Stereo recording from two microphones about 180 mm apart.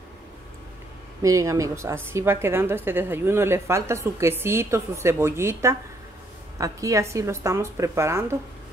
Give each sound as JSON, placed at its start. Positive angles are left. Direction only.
{"t": 1.2, "sound": "a woman's voice", "side_deg": -15}